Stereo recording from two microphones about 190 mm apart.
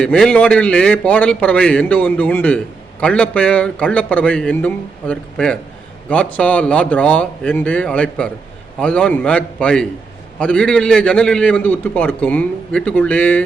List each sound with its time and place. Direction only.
0.0 s a man's voice: 5° left (ahead or behind)